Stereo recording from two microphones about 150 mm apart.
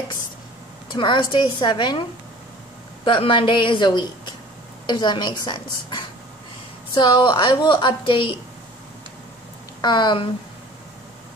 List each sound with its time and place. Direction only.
0.9 s a woman's voice: 30° left (ahead or behind)
3.1 s a woman's voice: 35° left (ahead or behind)
9.8 s a woman's voice: 30° left (ahead or behind)